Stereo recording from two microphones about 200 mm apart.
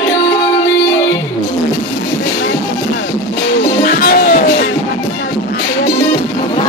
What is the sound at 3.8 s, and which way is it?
Music, 45° left (ahead or behind).